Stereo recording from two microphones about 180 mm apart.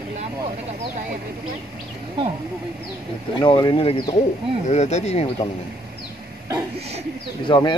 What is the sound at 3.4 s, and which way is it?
Speech, 25° left (ahead or behind).